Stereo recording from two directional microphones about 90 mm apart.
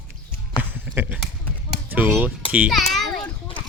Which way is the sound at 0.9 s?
15° right (ahead or behind).